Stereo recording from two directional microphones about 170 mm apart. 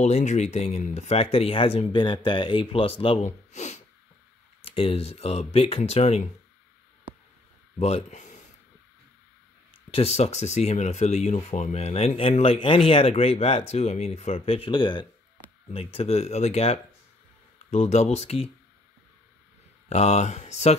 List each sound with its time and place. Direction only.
0.0 s speech: 45° left (ahead or behind)
7.8 s speech: 40° left (ahead or behind)
9.8 s speech: 35° left (ahead or behind)
19.9 s speech: 40° left (ahead or behind)